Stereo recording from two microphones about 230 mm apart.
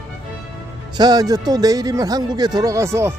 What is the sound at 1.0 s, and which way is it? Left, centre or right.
Speech, centre.